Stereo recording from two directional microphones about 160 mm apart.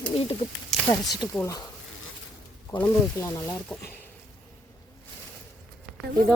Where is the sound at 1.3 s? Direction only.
20° left (ahead or behind).